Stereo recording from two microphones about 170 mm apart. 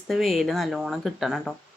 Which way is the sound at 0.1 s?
Centre (ahead or behind).